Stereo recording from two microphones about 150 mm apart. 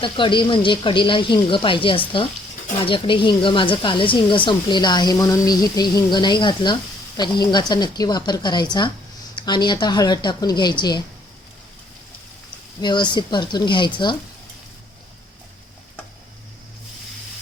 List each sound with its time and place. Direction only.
0.0 s speech: 35° left (ahead or behind)
12.8 s speech: 30° left (ahead or behind)